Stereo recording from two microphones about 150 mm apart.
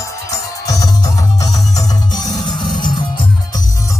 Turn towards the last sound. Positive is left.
turn(degrees=30)  # may be behind; listen again after turning